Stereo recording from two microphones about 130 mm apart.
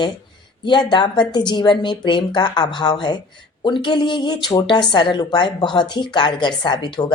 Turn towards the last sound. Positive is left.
turn(degrees=35)  # may be behind; listen again after turning